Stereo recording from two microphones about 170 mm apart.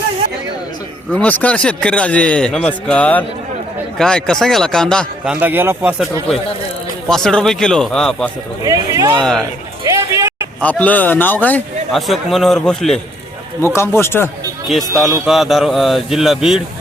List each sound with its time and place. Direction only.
1.1 s a man's voice: 10° left (ahead or behind)
5.3 s a man's voice: 10° right (ahead or behind)
7.1 s speech: 5° left (ahead or behind)
8.6 s speech: 20° right (ahead or behind)
9.4 s a sound: 20° right (ahead or behind)
10.6 s a man's voice: 10° left (ahead or behind)
13.7 s a man's voice: 15° left (ahead or behind)
14.7 s speech: centre (ahead or behind)